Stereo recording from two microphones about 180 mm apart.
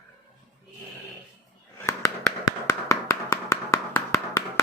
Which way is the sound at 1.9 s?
15° left (ahead or behind).